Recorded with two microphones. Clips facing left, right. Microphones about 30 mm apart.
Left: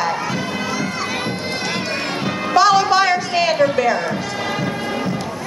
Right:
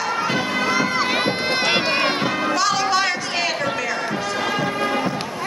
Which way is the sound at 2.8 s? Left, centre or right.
Centre.